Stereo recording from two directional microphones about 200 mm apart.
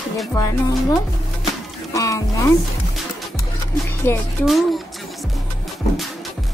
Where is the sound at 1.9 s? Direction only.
15° left (ahead or behind).